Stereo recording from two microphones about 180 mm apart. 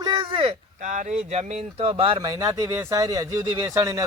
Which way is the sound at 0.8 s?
45° right (ahead or behind).